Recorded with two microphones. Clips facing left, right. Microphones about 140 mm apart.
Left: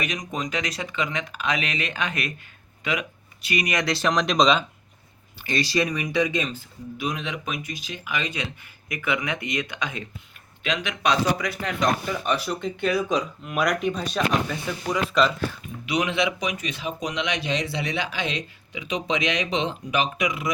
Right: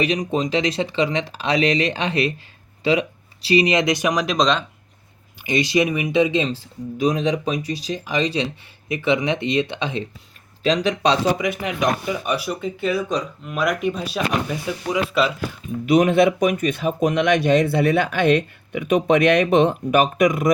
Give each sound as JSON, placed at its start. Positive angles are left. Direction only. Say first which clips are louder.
{"t": 0.0, "sound": "speech", "louder": "right 9 dB", "side_deg": -30}
{"t": 5.4, "sound": "speech", "louder": "right 5 dB", "side_deg": -20}
{"t": 15.9, "sound": "speech", "louder": "right 9 dB", "side_deg": -50}